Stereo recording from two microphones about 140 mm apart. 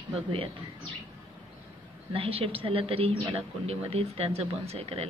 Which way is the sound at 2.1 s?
40° right (ahead or behind).